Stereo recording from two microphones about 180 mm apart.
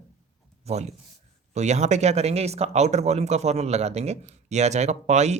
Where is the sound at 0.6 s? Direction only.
35° right (ahead or behind).